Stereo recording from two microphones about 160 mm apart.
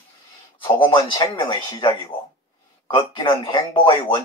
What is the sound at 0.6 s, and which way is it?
Speech, 30° left (ahead or behind).